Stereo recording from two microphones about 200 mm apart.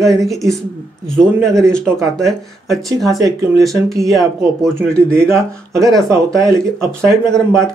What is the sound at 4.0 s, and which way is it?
Speech, centre (ahead or behind).